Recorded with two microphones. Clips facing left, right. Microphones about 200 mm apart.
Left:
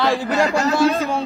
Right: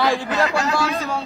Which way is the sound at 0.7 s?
25° left (ahead or behind).